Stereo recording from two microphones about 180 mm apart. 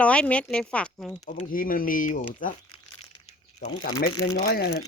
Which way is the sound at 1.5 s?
50° left (ahead or behind).